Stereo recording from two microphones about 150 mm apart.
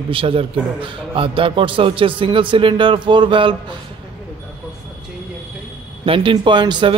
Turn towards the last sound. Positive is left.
turn(degrees=-30)  # may be behind; listen again after turning